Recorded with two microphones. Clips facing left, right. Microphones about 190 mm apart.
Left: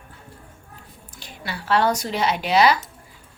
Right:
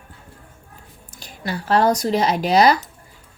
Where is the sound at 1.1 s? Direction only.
40° right (ahead or behind).